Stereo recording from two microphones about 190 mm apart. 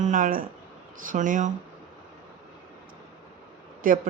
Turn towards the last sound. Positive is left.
turn(degrees=-45)  # may be behind; listen again after turning